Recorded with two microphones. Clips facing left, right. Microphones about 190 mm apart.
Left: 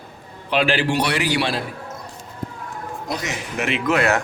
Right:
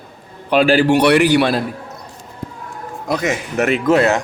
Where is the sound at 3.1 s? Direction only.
50° right (ahead or behind).